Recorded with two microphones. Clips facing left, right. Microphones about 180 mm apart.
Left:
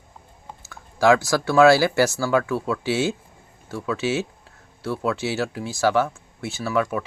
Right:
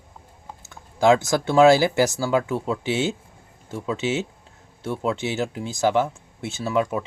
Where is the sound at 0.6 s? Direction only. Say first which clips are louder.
Even; 20° right (ahead or behind).